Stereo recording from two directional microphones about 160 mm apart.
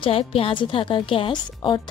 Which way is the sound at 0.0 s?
35° left (ahead or behind).